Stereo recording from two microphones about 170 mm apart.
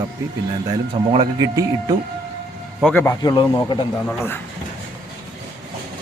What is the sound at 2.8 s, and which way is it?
Speech, 10° left (ahead or behind).